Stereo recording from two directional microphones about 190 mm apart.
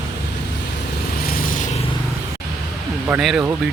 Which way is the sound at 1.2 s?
50° left (ahead or behind).